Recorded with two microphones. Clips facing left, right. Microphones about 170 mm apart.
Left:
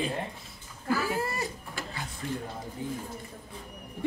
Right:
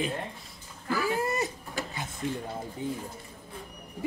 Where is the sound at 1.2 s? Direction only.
20° right (ahead or behind).